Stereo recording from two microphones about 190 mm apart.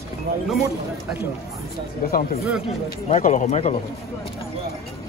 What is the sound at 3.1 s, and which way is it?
Speech, 40° left (ahead or behind).